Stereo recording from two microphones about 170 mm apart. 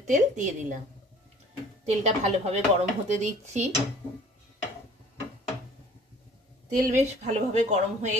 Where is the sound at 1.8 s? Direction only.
40° right (ahead or behind).